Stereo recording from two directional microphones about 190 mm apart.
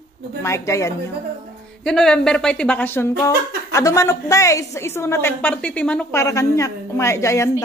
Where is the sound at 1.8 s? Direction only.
5° left (ahead or behind).